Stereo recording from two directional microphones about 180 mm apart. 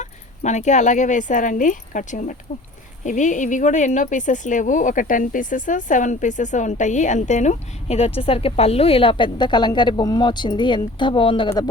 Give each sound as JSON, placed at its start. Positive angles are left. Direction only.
{"t": 0.0, "sound": "speech", "side_deg": 40}